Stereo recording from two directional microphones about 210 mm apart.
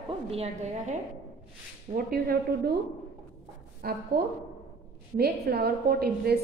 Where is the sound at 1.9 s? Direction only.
45° right (ahead or behind).